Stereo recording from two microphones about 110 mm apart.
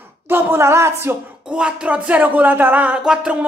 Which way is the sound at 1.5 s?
10° right (ahead or behind).